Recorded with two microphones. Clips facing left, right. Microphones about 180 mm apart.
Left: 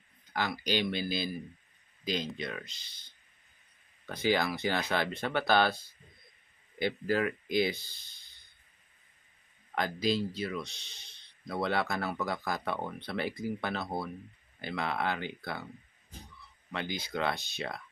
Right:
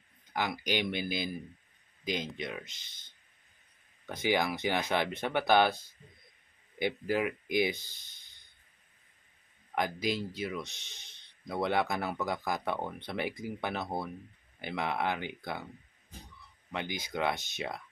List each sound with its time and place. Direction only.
0.3 s speech: 15° right (ahead or behind)
4.1 s speech: 15° right (ahead or behind)
9.8 s speech: 15° right (ahead or behind)
16.7 s speech: 15° right (ahead or behind)